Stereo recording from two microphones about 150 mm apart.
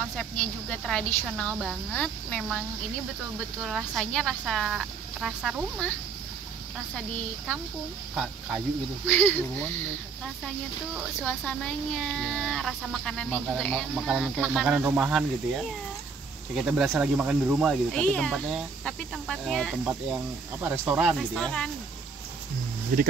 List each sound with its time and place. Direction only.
0.2 s a woman's voice: 5° left (ahead or behind)
3.6 s speech: centre (ahead or behind)
9.0 s a woman's voice: 10° left (ahead or behind)
11.2 s speech: 5° left (ahead or behind)
17.9 s speech: 5° left (ahead or behind)
19.8 s speech: 10° right (ahead or behind)
21.2 s speech: 5° left (ahead or behind)
22.9 s speech: 65° right (ahead or behind)